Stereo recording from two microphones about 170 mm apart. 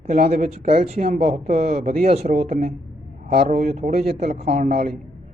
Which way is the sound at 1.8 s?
60° right (ahead or behind).